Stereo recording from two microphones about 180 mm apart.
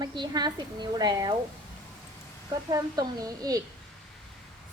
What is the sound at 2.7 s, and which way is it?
Speech, 20° right (ahead or behind).